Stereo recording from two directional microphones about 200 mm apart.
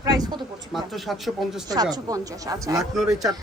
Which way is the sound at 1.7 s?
20° right (ahead or behind).